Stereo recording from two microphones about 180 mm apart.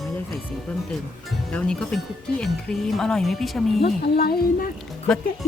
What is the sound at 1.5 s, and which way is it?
Speech, 5° left (ahead or behind).